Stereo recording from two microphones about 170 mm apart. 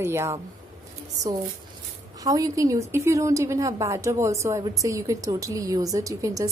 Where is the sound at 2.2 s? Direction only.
20° right (ahead or behind).